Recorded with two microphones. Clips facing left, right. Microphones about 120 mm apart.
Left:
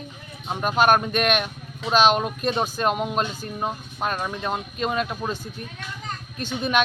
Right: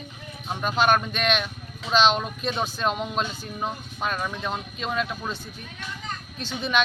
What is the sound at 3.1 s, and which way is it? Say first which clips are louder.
Speech: left 3 dB; 45° left (ahead or behind).